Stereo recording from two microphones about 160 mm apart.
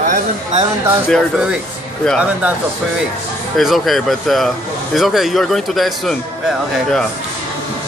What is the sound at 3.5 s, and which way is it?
Speech, centre (ahead or behind).